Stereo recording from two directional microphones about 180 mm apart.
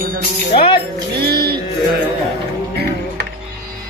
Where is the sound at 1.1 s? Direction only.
60° right (ahead or behind).